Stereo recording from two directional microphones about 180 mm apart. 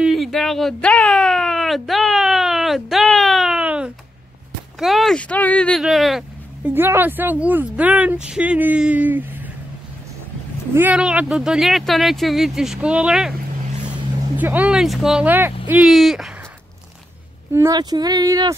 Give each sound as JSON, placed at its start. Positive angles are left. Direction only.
{"t": 0.0, "sound": "a sound", "side_deg": 0}
{"t": 4.7, "sound": "speech", "side_deg": 0}
{"t": 6.7, "sound": "speech", "side_deg": -10}
{"t": 10.7, "sound": "speech", "side_deg": -10}
{"t": 14.3, "sound": "speech", "side_deg": -10}
{"t": 17.5, "sound": "speech", "side_deg": -15}